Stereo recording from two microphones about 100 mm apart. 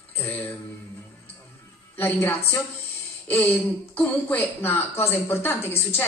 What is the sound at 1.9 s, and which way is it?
A woman's voice, 20° left (ahead or behind).